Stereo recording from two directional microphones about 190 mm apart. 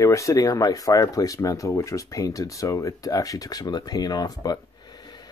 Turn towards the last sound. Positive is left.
turn(degrees=20)  # may be behind; listen again after turning